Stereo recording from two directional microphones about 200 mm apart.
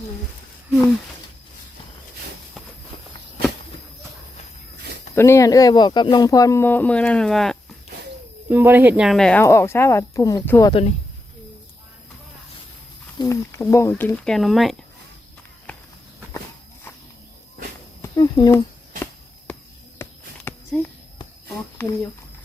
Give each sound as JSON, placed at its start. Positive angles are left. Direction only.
{"t": 5.1, "sound": "speech", "side_deg": 15}
{"t": 8.4, "sound": "speech", "side_deg": -10}
{"t": 10.7, "sound": "speech", "side_deg": 30}
{"t": 13.1, "sound": "speech", "side_deg": 15}
{"t": 14.3, "sound": "speech", "side_deg": 0}
{"t": 15.7, "sound": "walk", "side_deg": 5}
{"t": 18.0, "sound": "a sound", "side_deg": 20}
{"t": 20.0, "sound": "a sound", "side_deg": 10}
{"t": 21.8, "sound": "speech", "side_deg": 10}